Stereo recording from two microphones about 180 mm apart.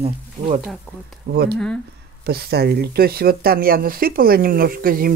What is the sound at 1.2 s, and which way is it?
Speech, 60° right (ahead or behind).